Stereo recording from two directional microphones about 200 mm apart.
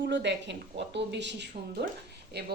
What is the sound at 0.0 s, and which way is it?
Speech, 60° right (ahead or behind).